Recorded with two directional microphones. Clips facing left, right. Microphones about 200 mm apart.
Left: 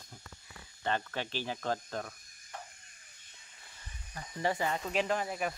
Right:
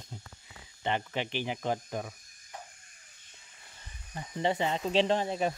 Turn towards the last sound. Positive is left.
turn(degrees=-25)  # may be behind; listen again after turning